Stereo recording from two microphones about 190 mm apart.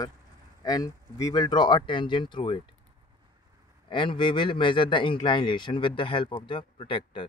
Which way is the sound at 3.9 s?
25° left (ahead or behind).